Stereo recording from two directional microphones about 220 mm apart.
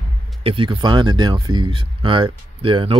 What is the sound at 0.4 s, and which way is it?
Speech, 25° right (ahead or behind).